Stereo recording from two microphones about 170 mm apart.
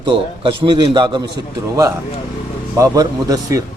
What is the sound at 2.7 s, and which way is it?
Speech, 20° right (ahead or behind).